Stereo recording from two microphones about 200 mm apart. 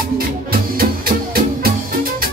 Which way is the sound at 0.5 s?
45° right (ahead or behind).